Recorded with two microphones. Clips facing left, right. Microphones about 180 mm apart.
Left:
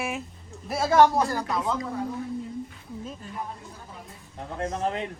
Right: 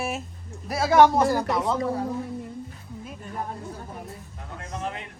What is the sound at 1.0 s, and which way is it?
Speech, 15° right (ahead or behind).